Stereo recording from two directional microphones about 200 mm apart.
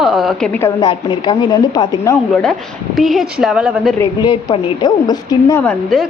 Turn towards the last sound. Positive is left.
turn(degrees=5)  # may be behind; listen again after turning